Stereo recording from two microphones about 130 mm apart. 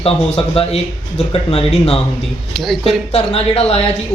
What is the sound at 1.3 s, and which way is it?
Speech, 50° left (ahead or behind).